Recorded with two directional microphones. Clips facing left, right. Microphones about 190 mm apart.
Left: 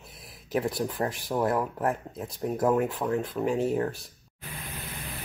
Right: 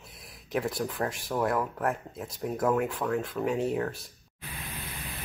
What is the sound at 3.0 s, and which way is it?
Speech, 20° left (ahead or behind).